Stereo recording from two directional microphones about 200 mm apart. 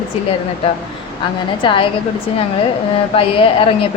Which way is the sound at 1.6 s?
25° left (ahead or behind).